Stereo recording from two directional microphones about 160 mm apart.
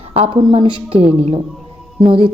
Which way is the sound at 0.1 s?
35° right (ahead or behind).